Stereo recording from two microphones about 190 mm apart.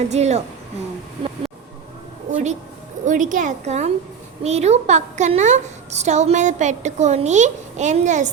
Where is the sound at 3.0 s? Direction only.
40° right (ahead or behind).